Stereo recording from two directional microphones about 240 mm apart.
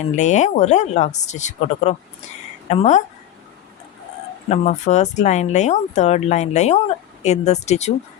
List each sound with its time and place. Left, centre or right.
0.0 s speech: left
4.4 s speech: left